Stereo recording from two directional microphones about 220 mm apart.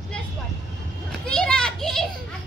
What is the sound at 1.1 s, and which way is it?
Children playing, 5° left (ahead or behind).